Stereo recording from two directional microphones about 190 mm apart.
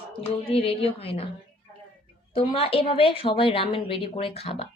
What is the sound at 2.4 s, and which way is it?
A woman's voice, 30° left (ahead or behind).